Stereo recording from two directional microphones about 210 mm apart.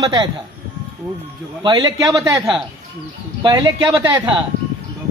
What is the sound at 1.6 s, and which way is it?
Speech, 20° right (ahead or behind).